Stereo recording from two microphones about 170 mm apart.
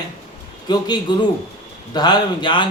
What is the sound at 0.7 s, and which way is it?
Speech, 25° left (ahead or behind).